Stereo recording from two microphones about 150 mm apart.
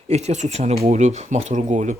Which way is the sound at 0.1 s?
50° right (ahead or behind).